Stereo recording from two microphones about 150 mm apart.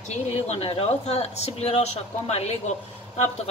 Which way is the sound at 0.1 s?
45° left (ahead or behind).